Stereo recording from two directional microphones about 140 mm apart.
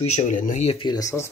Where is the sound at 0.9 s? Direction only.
25° left (ahead or behind).